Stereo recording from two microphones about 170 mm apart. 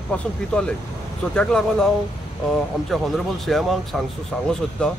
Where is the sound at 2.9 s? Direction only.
Centre (ahead or behind).